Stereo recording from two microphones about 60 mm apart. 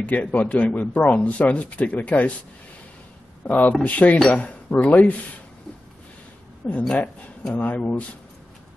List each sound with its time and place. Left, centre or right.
0.0 s speech: left
3.4 s speech: left
6.6 s speech: left